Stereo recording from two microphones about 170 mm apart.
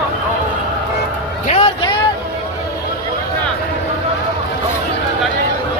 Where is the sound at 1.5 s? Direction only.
25° left (ahead or behind).